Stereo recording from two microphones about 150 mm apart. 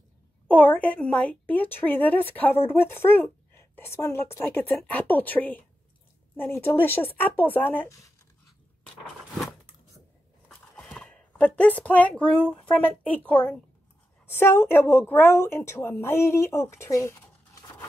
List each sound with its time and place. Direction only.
0.5 s a woman's voice: 10° left (ahead or behind)
9.4 s a sound: centre (ahead or behind)
10.8 s a woman's voice: 5° left (ahead or behind)